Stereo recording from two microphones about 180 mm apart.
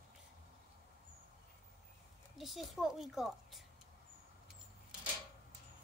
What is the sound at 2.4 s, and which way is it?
Speech, centre (ahead or behind).